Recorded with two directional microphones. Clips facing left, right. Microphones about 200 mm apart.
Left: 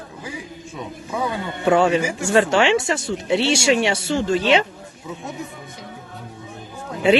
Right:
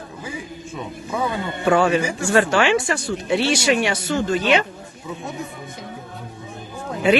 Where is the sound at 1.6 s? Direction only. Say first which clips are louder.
Left 1 dB; 20° left (ahead or behind).